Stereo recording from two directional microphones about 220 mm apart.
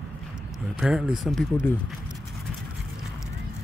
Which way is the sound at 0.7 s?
5° right (ahead or behind).